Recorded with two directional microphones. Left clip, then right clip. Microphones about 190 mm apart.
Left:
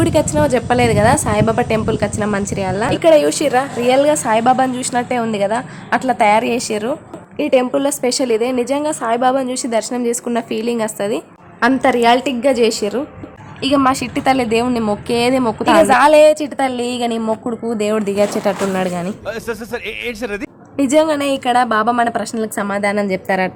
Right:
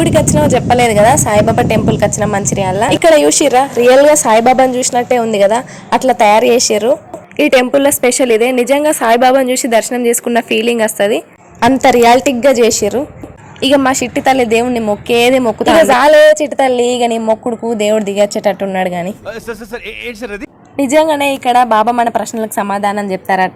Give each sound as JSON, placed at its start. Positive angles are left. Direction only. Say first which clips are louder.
{"t": 0.0, "sound": "a woman's voice", "louder": "right 4 dB", "side_deg": -5}
{"t": 19.5, "sound": "a woman's voice", "louder": "even", "side_deg": 0}